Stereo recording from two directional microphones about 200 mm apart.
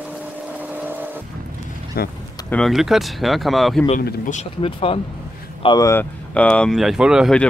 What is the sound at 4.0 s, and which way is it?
Speech, 45° left (ahead or behind).